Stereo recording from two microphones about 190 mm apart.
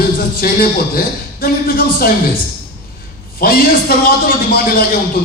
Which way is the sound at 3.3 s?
50° left (ahead or behind).